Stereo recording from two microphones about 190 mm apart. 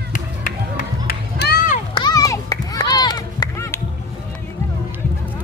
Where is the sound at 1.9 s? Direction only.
20° left (ahead or behind).